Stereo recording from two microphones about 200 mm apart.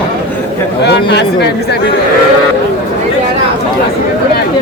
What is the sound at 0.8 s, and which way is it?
Speech, 60° left (ahead or behind).